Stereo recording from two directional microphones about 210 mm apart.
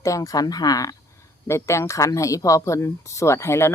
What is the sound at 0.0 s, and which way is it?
Speech, 15° left (ahead or behind).